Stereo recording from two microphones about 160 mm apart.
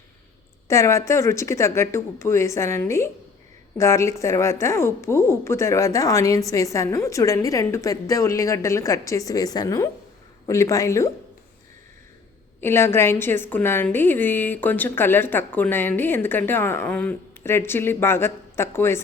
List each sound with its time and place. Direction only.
0.7 s a woman's voice: 20° left (ahead or behind)
12.5 s a woman's voice: 15° left (ahead or behind)